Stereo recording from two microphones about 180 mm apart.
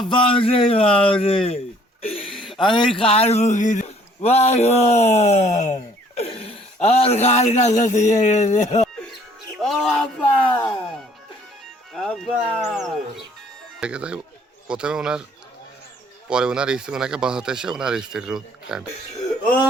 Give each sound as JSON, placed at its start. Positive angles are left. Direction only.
{"t": 0.1, "sound": "a man's voice", "side_deg": 30}
{"t": 2.0, "sound": "a sound", "side_deg": 30}
{"t": 2.3, "sound": "a sound", "side_deg": 0}
{"t": 2.6, "sound": "a man's voice", "side_deg": 25}
{"t": 9.6, "sound": "speech", "side_deg": 0}
{"t": 11.9, "sound": "speech", "side_deg": 0}
{"t": 16.3, "sound": "speech", "side_deg": -5}